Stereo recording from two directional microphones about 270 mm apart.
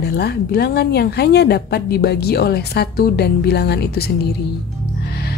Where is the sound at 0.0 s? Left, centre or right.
Left.